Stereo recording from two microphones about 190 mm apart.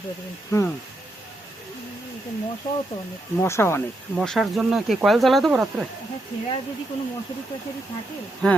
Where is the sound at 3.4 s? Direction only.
15° left (ahead or behind).